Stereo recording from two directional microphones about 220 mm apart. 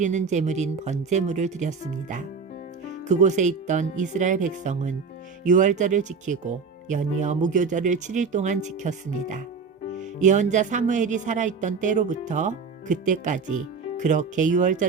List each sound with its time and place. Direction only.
0.0 s speech: 35° right (ahead or behind)